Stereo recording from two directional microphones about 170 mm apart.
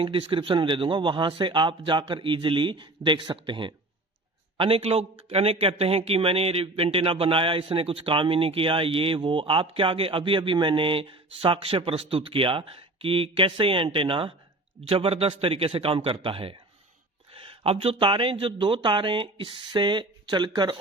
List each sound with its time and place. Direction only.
0.0 s speech: 30° right (ahead or behind)